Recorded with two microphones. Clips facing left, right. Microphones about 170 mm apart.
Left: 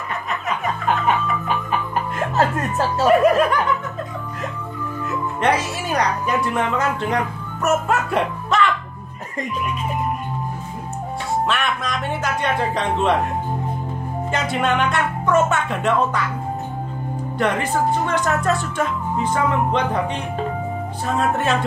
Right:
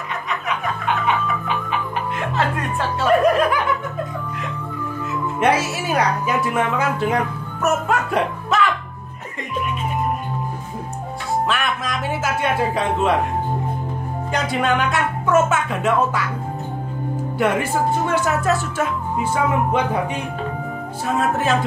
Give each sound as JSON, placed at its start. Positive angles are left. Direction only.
{"t": 0.5, "sound": "music", "side_deg": 40}
{"t": 3.1, "sound": "snicker", "side_deg": 5}
{"t": 5.4, "sound": "speech", "side_deg": -10}
{"t": 7.6, "sound": "music", "side_deg": 0}
{"t": 11.4, "sound": "speech", "side_deg": 0}
{"t": 14.3, "sound": "speech", "side_deg": 0}
{"t": 17.4, "sound": "speech", "side_deg": -10}
{"t": 21.1, "sound": "speech", "side_deg": 0}